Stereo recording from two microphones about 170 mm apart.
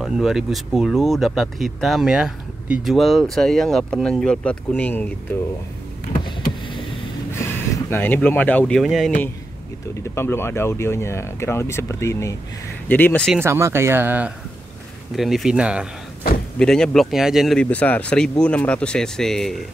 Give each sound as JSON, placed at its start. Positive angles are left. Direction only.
{"t": 0.0, "sound": "speech", "side_deg": 0}
{"t": 6.2, "sound": "vehicle", "side_deg": 30}
{"t": 7.7, "sound": "speech", "side_deg": 10}
{"t": 10.1, "sound": "speech", "side_deg": 15}
{"t": 13.4, "sound": "speech", "side_deg": -15}